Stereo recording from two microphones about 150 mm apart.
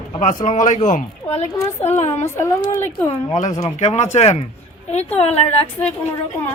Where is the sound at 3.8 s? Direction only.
50° left (ahead or behind).